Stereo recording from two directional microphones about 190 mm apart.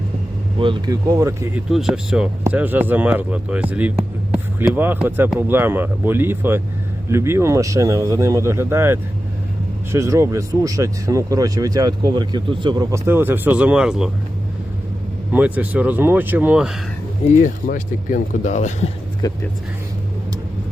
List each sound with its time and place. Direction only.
0.6 s speech: 20° right (ahead or behind)
1.7 s speech: centre (ahead or behind)
15.3 s speech: 10° right (ahead or behind)
17.3 s speech: 45° left (ahead or behind)
19.2 s speech: 20° left (ahead or behind)